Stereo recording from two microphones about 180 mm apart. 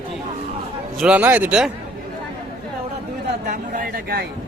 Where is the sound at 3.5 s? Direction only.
50° right (ahead or behind).